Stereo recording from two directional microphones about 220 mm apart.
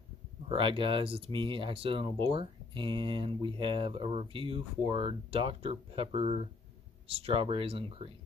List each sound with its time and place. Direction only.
0.5 s speech: 25° right (ahead or behind)